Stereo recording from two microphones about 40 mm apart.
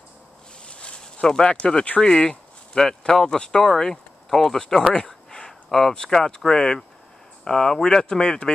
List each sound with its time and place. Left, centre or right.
0.7 s a sound: left
2.0 s speech: centre
5.7 s speech: centre; by 8.5 s left